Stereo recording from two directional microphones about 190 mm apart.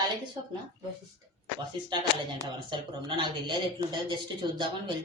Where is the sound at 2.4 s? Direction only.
25° right (ahead or behind).